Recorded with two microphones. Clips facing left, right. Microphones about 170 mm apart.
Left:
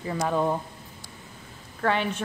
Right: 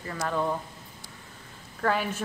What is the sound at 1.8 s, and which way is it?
Speech, 5° right (ahead or behind).